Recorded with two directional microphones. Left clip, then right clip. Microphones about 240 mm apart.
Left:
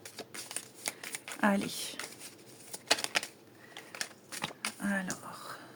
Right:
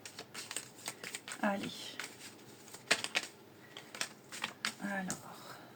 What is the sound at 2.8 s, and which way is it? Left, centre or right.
Typewriter, left.